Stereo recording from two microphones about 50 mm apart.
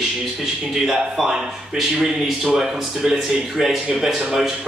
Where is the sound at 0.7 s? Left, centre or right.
Centre.